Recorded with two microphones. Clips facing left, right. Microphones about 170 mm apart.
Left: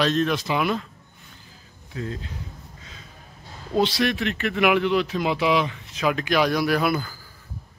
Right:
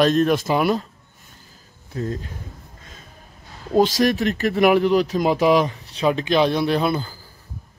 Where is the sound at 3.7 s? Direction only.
45° right (ahead or behind); by 7.2 s 25° right (ahead or behind).